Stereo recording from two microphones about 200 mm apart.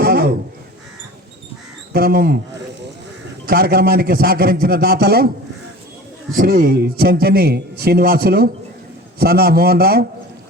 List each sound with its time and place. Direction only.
0.0 s crow: 50° right (ahead or behind)
1.9 s a man's voice: 50° right (ahead or behind)
3.4 s a man's voice: 50° right (ahead or behind)
6.3 s a man's voice: 45° right (ahead or behind)